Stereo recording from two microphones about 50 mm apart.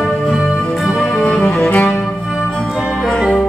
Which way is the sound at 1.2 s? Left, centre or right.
Left.